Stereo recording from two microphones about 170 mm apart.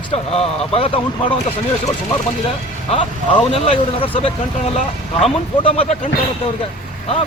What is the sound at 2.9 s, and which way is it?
Speech, 35° left (ahead or behind).